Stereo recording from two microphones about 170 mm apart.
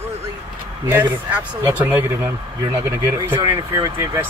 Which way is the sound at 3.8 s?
20° right (ahead or behind).